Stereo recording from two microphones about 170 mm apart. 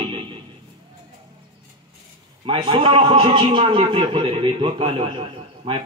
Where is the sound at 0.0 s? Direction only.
30° right (ahead or behind).